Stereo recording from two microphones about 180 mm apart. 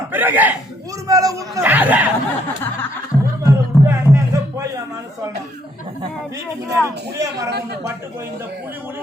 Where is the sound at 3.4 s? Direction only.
15° right (ahead or behind).